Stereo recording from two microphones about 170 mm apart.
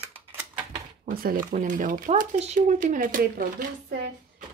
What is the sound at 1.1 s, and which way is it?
Speech, 60° right (ahead or behind).